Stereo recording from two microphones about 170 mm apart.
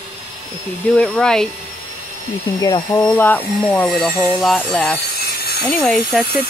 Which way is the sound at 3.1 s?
10° left (ahead or behind).